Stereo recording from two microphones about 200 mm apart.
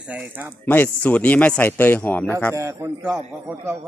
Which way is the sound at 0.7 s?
10° left (ahead or behind).